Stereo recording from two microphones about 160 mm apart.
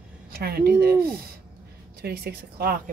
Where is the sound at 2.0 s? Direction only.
90° right.